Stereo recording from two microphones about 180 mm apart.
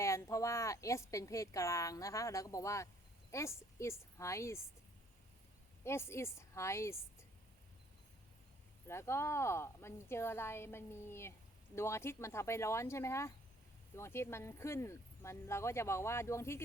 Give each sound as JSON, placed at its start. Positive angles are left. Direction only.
{"t": 0.0, "sound": "a woman's voice", "side_deg": 15}
{"t": 5.8, "sound": "a woman's voice", "side_deg": 15}
{"t": 8.9, "sound": "a woman's voice", "side_deg": 15}